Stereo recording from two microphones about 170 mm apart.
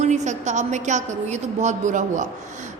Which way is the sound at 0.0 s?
45° right (ahead or behind).